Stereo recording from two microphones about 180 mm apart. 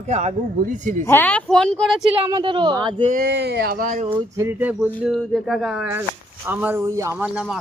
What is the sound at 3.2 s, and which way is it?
Speech, 70° right (ahead or behind).